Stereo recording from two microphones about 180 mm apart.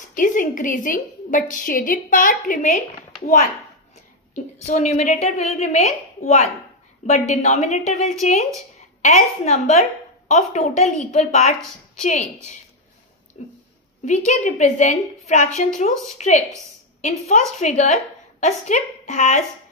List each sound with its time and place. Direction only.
0.1 s a woman's voice: 45° left (ahead or behind)
4.6 s a woman's voice: 35° left (ahead or behind)
13.4 s a woman's voice: 40° left (ahead or behind)
17.6 s a woman's voice: 40° left (ahead or behind)